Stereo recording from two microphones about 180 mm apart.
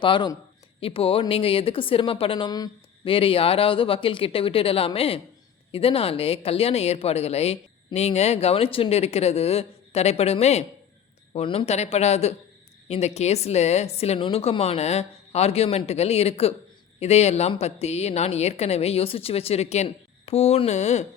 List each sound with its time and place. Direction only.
0.0 s speech: 25° left (ahead or behind)